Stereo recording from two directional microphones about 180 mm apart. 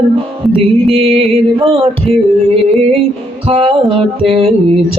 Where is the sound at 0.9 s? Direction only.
35° right (ahead or behind).